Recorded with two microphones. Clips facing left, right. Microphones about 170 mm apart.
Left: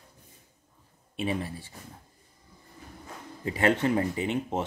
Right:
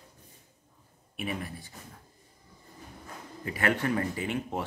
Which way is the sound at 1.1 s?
25° left (ahead or behind).